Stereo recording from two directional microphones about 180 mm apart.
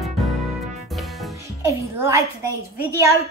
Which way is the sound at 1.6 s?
15° right (ahead or behind).